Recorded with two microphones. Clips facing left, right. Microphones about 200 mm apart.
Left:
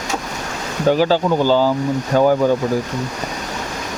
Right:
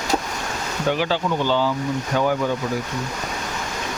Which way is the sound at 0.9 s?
40° left (ahead or behind).